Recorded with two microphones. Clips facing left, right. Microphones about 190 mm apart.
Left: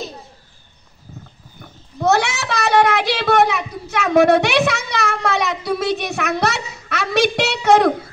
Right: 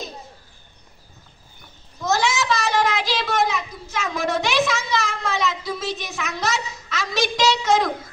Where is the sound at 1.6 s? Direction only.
65° left (ahead or behind).